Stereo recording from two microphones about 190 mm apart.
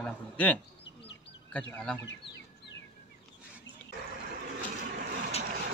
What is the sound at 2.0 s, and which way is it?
Chicken, 70° left (ahead or behind).